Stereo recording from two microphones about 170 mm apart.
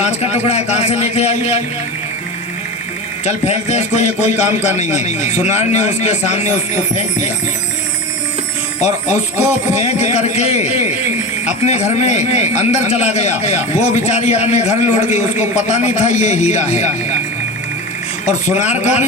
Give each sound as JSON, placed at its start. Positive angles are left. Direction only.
{"t": 0.0, "sound": "speech", "side_deg": 40}
{"t": 3.2, "sound": "speech", "side_deg": 40}
{"t": 8.8, "sound": "speech", "side_deg": 40}
{"t": 18.3, "sound": "speech", "side_deg": 40}